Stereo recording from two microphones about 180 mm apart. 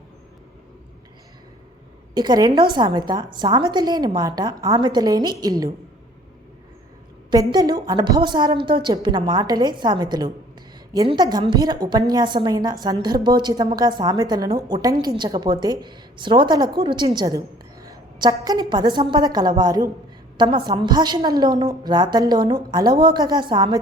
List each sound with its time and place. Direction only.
2.1 s a woman's voice: 25° right (ahead or behind)
7.3 s a woman's voice: 20° right (ahead or behind)